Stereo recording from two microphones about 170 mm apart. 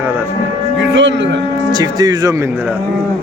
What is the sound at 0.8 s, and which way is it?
Speech, 90° right.